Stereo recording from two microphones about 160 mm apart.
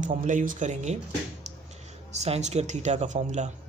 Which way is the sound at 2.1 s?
45° right (ahead or behind).